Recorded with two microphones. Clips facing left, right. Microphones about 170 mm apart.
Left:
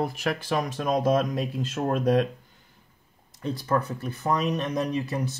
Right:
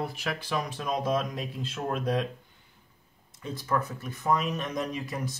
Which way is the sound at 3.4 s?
35° left (ahead or behind).